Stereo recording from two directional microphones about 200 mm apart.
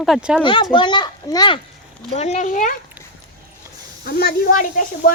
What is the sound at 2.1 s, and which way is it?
Speech, 35° left (ahead or behind).